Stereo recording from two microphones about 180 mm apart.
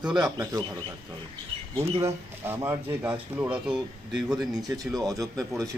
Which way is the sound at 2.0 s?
15° right (ahead or behind).